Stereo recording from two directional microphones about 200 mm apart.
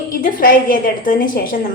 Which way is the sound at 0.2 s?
45° left (ahead or behind).